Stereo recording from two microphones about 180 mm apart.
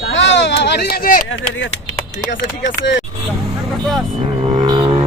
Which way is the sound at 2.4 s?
85° left.